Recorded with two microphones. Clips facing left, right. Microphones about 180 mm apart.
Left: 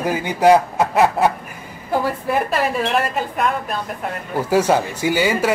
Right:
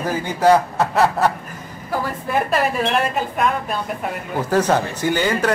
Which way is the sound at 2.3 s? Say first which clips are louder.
Right 1 dB; centre (ahead or behind).